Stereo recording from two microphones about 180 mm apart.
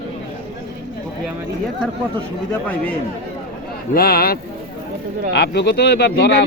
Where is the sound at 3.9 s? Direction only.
55° left (ahead or behind).